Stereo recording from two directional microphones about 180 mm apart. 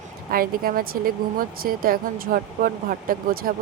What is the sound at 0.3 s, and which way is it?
Speech, 55° right (ahead or behind).